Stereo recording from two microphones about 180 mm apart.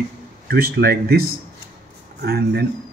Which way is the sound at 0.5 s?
60° right (ahead or behind).